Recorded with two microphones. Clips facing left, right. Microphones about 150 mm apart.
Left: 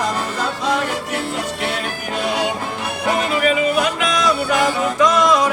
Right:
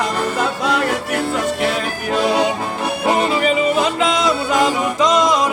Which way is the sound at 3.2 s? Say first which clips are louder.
Left 1 dB; 30° right (ahead or behind).